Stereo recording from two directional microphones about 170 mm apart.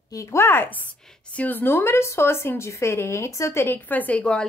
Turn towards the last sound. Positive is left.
turn(degrees=5)  # may be behind; listen again after turning